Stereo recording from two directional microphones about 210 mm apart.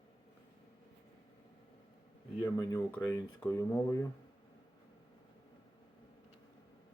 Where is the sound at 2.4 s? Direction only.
10° left (ahead or behind).